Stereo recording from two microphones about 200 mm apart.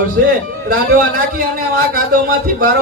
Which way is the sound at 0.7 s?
45° right (ahead or behind).